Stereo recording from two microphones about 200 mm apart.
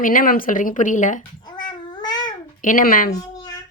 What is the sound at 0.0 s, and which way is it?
Speech, 45° left (ahead or behind).